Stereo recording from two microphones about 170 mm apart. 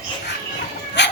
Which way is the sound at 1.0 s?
90° left.